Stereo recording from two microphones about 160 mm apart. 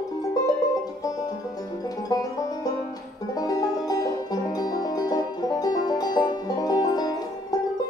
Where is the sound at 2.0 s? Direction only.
25° left (ahead or behind).